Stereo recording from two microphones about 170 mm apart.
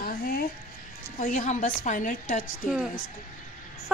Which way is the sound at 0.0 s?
65° left (ahead or behind).